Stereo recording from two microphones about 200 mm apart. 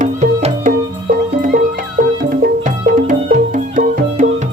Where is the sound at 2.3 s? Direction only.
40° right (ahead or behind).